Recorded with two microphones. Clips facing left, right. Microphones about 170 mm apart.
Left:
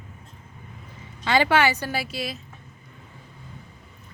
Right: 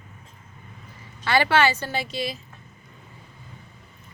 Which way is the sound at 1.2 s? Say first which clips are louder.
Even; 15° left (ahead or behind).